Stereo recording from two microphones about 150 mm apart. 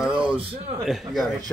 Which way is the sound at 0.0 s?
5° right (ahead or behind).